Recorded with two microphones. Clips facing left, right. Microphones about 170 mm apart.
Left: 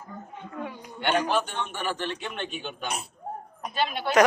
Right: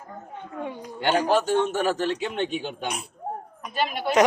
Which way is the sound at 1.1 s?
35° right (ahead or behind).